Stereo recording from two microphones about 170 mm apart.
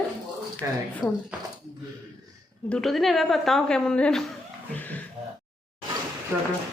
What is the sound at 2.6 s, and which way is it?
A woman's voice, 5° left (ahead or behind).